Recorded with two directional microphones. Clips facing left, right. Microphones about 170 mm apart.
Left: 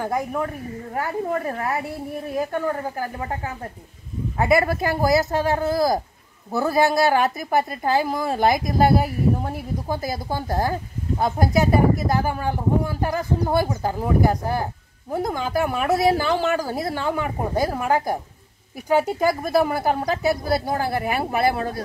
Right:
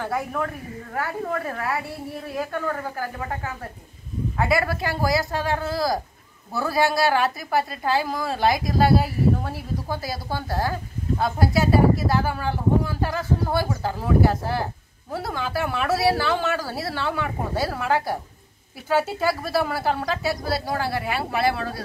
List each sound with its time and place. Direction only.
0.0 s speech: 20° left (ahead or behind)
8.5 s a woman's voice: 50° left (ahead or behind)
9.8 s speech: 20° left (ahead or behind)
20.8 s a woman's voice: 50° left (ahead or behind)